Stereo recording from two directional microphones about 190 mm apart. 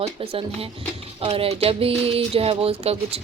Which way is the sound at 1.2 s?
30° right (ahead or behind).